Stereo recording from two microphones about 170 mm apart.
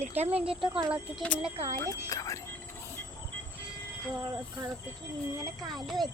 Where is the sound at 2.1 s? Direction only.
20° left (ahead or behind).